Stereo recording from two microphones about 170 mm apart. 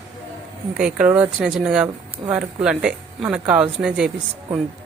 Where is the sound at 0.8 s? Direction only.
5° right (ahead or behind).